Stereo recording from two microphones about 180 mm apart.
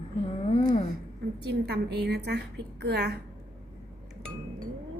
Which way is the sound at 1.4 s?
65° right (ahead or behind).